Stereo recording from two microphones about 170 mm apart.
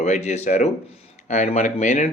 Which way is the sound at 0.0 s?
45° left (ahead or behind).